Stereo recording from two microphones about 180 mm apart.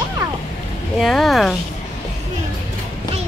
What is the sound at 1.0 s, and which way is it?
Speech, centre (ahead or behind).